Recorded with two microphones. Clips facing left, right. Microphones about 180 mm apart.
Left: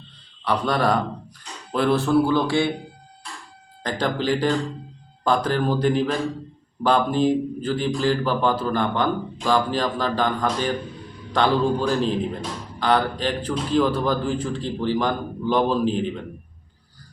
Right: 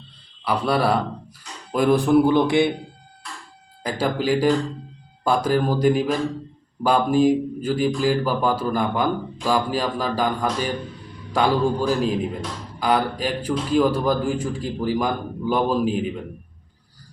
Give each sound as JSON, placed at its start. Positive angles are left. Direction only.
{"t": 0.4, "sound": "a man's voice", "side_deg": -10}
{"t": 3.8, "sound": "speech", "side_deg": -10}